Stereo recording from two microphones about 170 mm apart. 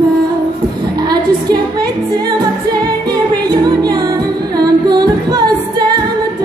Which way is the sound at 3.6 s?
25° right (ahead or behind).